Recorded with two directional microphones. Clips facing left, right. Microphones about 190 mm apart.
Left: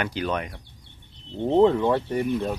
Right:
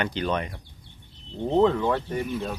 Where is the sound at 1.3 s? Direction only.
20° left (ahead or behind).